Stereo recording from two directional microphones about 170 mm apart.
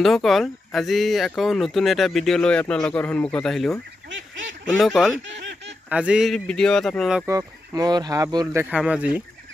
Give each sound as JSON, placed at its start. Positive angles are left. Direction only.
{"t": 0.0, "sound": "speech", "side_deg": 0}
{"t": 7.2, "sound": "speech", "side_deg": -20}
{"t": 8.6, "sound": "speech", "side_deg": -10}